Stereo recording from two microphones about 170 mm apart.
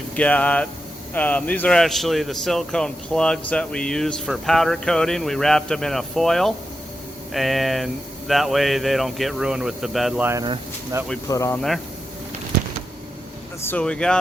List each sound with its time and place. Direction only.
0.2 s speech: 10° left (ahead or behind)
11.3 s speech: 15° left (ahead or behind)
13.7 s speech: 5° left (ahead or behind)